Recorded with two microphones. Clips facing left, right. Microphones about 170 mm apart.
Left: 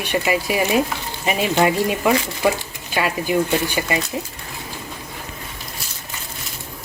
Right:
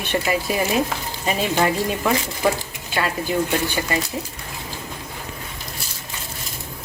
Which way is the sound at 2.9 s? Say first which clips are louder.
Left 2 dB; 15° left (ahead or behind).